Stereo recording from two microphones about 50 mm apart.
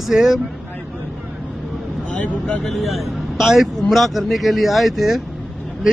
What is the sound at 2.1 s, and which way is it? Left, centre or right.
Speech, left.